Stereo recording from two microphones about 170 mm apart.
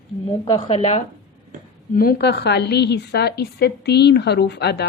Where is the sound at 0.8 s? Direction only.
40° left (ahead or behind).